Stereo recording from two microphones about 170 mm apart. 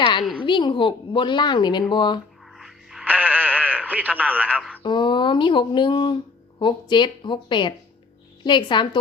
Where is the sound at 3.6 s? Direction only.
10° right (ahead or behind).